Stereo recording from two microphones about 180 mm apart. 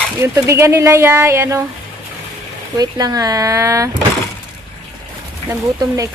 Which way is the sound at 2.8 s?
20° right (ahead or behind).